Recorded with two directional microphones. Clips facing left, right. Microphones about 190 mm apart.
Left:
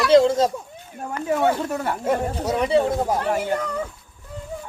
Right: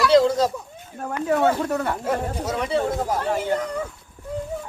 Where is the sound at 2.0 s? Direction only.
25° left (ahead or behind).